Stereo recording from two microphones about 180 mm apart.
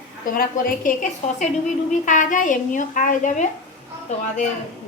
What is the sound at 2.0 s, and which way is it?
A woman's voice, 45° left (ahead or behind).